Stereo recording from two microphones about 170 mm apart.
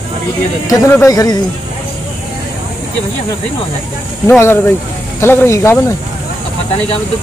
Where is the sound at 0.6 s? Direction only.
15° left (ahead or behind).